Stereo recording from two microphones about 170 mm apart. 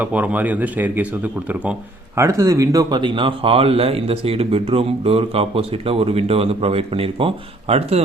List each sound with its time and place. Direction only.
0.0 s speech: 10° right (ahead or behind); by 8.0 s 35° right (ahead or behind)